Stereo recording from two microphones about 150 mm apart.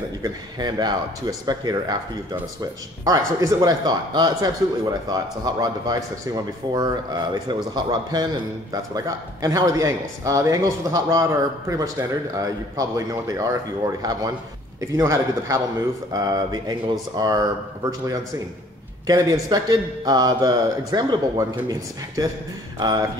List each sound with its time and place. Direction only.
0.2 s speech: 30° right (ahead or behind)
3.1 s speech: 25° right (ahead or behind)
14.8 s speech: 20° right (ahead or behind)
19.0 s speech: 25° right (ahead or behind)